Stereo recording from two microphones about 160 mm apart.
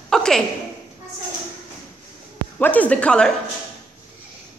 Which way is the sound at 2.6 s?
10° left (ahead or behind).